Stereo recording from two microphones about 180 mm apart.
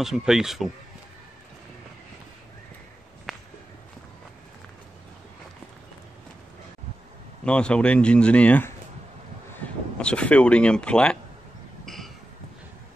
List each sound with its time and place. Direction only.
0.0 s speech: 5° right (ahead or behind)
3.3 s walk: centre (ahead or behind)
7.4 s speech: 5° left (ahead or behind)
11.8 s a sound: centre (ahead or behind)